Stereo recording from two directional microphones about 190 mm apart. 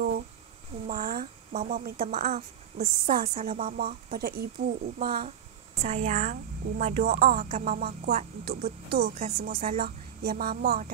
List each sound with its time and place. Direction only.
0.8 s a woman's voice: 50° right (ahead or behind)
7.4 s speech: 40° right (ahead or behind)